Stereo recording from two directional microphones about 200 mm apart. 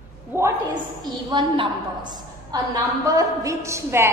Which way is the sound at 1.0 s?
20° right (ahead or behind).